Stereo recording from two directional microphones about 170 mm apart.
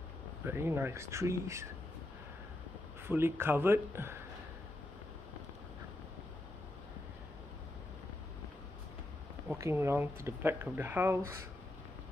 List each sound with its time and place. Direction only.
0.5 s speech: 15° right (ahead or behind)
3.1 s speech: 15° right (ahead or behind)
9.6 s speech: 15° right (ahead or behind)